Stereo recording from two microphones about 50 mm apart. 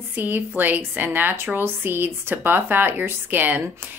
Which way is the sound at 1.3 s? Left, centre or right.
Right.